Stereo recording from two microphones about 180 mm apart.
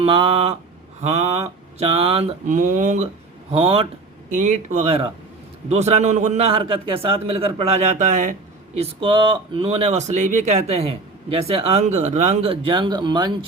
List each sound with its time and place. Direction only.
0.0 s a man's voice: 30° right (ahead or behind)
3.5 s a man's voice: 30° right (ahead or behind)
4.4 s a man's voice: 40° right (ahead or behind); by 13.3 s 25° right (ahead or behind)